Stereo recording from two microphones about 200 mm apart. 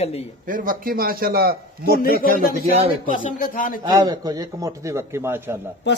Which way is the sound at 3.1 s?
40° left (ahead or behind).